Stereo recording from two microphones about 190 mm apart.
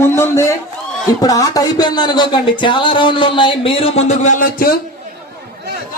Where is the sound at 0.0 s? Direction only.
15° left (ahead or behind); by 4.8 s 50° left (ahead or behind).